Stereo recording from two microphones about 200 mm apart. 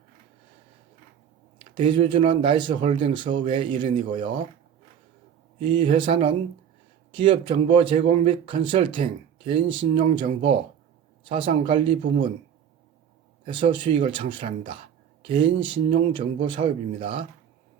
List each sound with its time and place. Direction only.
1.7 s speech: 25° right (ahead or behind)
5.5 s speech: 25° right (ahead or behind)
13.4 s speech: 25° right (ahead or behind)